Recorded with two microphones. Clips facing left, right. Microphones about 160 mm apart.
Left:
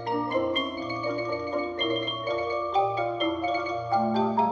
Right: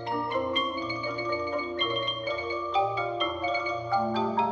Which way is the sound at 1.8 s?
45° left (ahead or behind).